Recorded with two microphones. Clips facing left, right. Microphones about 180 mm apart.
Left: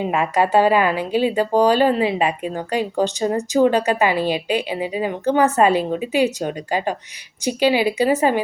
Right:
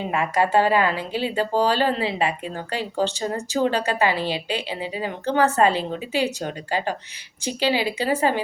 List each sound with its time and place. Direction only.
0.0 s speech: 20° left (ahead or behind)